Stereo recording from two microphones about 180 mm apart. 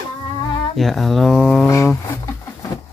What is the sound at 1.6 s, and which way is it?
Speech, 15° left (ahead or behind).